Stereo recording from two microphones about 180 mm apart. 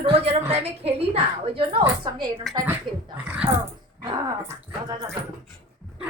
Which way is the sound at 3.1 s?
10° right (ahead or behind).